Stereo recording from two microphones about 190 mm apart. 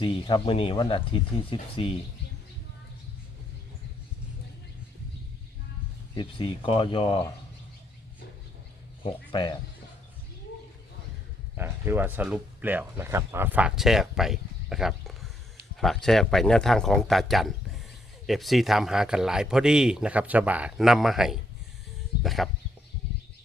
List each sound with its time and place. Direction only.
0.0 s speech: 25° left (ahead or behind)
6.1 s speech: 30° left (ahead or behind)
9.0 s speech: 25° left (ahead or behind)
11.5 s speech: 10° right (ahead or behind)